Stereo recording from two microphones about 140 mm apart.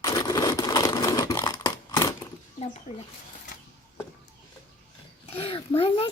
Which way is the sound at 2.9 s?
55° left (ahead or behind).